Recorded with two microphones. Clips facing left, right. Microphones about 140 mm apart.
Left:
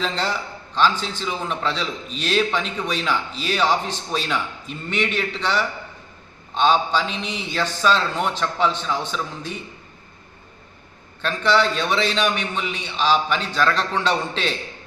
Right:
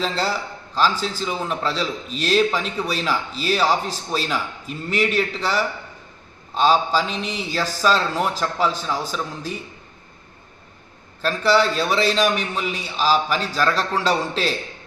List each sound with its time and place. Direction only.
0.9 s a man's voice: 35° right (ahead or behind)
1.2 s a man's voice: 5° right (ahead or behind)
11.2 s a man's voice: 5° right (ahead or behind)